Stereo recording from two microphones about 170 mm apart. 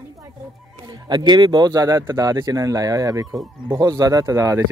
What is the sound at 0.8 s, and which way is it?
Speech, 25° right (ahead or behind).